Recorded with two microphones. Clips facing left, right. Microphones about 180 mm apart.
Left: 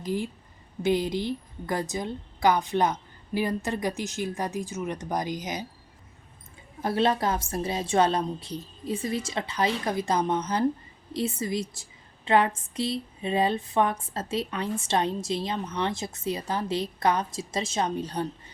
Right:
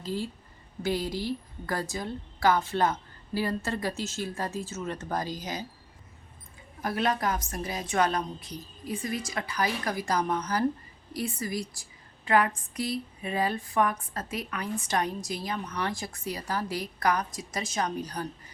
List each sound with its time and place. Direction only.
0.0 s a woman's voice: 15° left (ahead or behind)
6.8 s a woman's voice: 30° left (ahead or behind)